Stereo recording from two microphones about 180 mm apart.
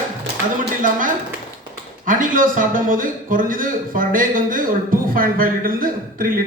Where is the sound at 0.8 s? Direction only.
50° right (ahead or behind).